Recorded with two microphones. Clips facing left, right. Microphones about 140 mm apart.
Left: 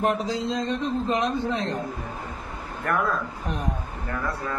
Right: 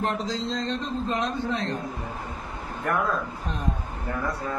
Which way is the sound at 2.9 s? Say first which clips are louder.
Left 1 dB; 10° right (ahead or behind).